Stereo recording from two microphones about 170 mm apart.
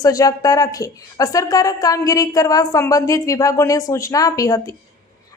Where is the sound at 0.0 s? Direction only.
20° left (ahead or behind).